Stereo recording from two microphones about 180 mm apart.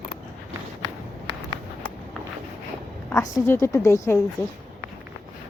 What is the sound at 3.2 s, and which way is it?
Speech, 15° left (ahead or behind).